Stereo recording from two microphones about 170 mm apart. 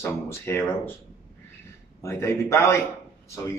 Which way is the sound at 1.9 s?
15° left (ahead or behind).